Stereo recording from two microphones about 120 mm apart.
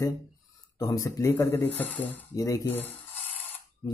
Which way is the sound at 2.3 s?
30° left (ahead or behind).